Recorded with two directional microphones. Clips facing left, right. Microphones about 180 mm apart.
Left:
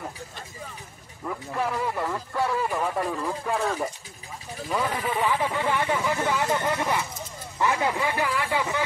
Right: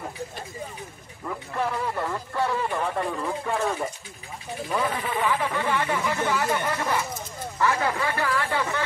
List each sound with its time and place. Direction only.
1.2 s speech: 5° left (ahead or behind)
5.2 s speech: 15° left (ahead or behind)